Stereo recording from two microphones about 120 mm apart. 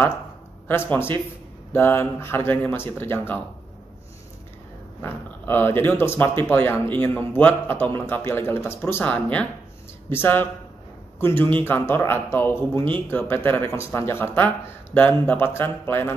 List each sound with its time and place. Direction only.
0.7 s speech: 20° left (ahead or behind)
5.0 s a man's voice: 15° left (ahead or behind)